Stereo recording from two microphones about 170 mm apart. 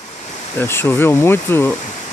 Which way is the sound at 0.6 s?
15° left (ahead or behind).